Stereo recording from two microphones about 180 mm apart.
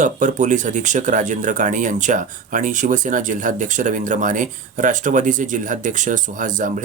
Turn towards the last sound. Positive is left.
turn(degrees=-45)  # may be behind; listen again after turning